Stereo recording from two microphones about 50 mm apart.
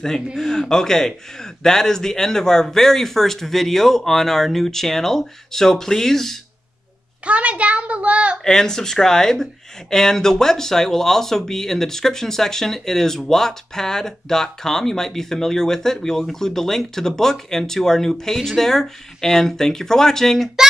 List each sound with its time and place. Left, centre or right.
0.4 s speech: centre
7.2 s a child's voice: right
8.5 s speech: centre